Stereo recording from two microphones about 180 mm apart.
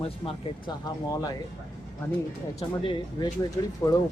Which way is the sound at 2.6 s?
25° left (ahead or behind).